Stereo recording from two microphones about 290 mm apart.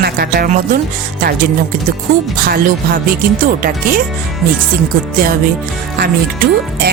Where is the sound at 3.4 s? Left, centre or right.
Right.